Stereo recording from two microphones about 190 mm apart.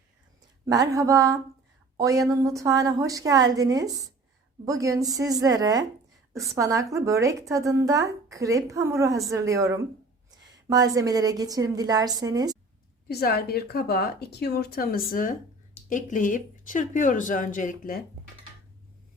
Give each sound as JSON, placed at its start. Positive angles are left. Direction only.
{"t": 0.6, "sound": "a woman's voice", "side_deg": -15}
{"t": 13.1, "sound": "a woman's voice", "side_deg": 55}